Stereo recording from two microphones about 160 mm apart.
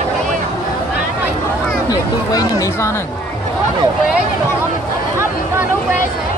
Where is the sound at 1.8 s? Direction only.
25° left (ahead or behind).